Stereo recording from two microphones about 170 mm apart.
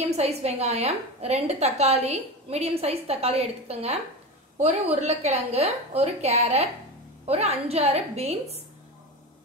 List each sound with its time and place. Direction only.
0.0 s a woman's voice: 40° right (ahead or behind)